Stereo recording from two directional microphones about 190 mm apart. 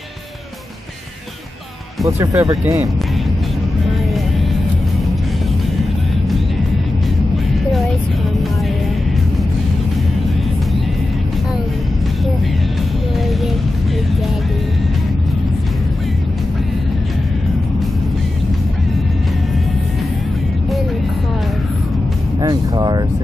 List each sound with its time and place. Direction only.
2.0 s speech: 15° right (ahead or behind)
22.4 s speech: 20° right (ahead or behind)